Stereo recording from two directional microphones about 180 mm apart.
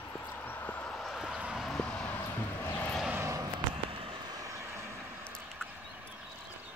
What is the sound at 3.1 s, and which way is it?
Vehicle, 15° right (ahead or behind).